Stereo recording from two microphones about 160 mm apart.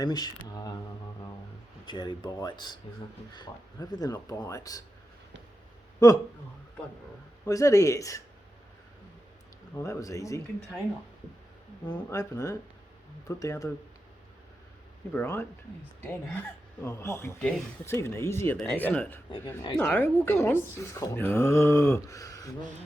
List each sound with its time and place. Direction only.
0.0 s speech: 25° left (ahead or behind)
1.9 s speech: 25° left (ahead or behind)
6.0 s speech: 20° left (ahead or behind)
7.4 s speech: 20° left (ahead or behind)
9.7 s speech: 20° left (ahead or behind)
11.9 s speech: 20° left (ahead or behind)
15.1 s speech: 10° left (ahead or behind)
16.8 s speech: 15° left (ahead or behind)
18.5 s speech: 5° left (ahead or behind); by 22.7 s 20° left (ahead or behind)